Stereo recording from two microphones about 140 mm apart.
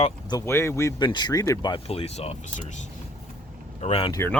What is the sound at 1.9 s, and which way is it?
Speech, 45° left (ahead or behind).